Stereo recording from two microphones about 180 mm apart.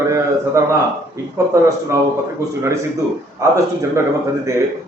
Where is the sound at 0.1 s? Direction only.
15° right (ahead or behind).